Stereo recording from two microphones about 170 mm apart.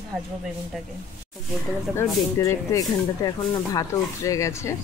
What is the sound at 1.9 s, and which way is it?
Speech, 15° left (ahead or behind).